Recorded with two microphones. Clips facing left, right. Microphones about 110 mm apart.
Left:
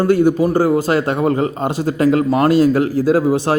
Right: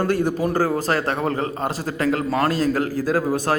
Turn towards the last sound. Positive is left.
turn(degrees=20)  # may be behind; listen again after turning